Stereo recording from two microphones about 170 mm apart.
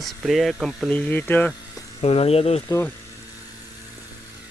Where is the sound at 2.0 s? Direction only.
35° left (ahead or behind).